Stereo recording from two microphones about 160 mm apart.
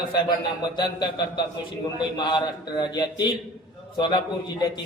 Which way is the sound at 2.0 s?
30° left (ahead or behind).